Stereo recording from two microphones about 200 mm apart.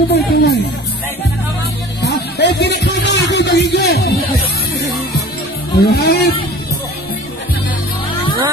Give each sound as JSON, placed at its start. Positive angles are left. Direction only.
{"t": 0.1, "sound": "music", "side_deg": 55}
{"t": 2.0, "sound": "music", "side_deg": 55}
{"t": 5.8, "sound": "speech", "side_deg": 50}